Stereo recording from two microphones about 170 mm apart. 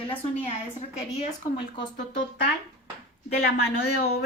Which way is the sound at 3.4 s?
75° left (ahead or behind).